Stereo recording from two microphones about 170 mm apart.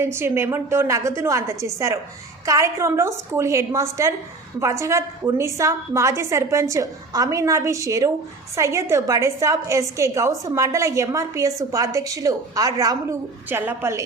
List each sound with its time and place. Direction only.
0.0 s a woman's voice: 15° right (ahead or behind)